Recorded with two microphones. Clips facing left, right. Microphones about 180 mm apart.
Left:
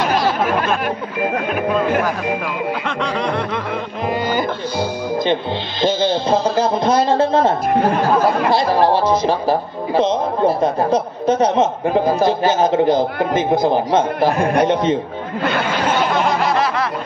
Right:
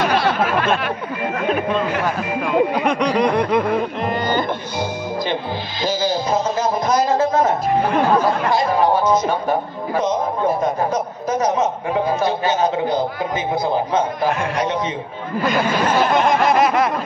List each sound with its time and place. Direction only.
2.8 s snicker: 15° right (ahead or behind)
4.1 s speech: 10° left (ahead or behind)
5.2 s speech: 25° left (ahead or behind)
12.9 s a man's voice: 65° left (ahead or behind)
16.3 s a sound: 20° right (ahead or behind)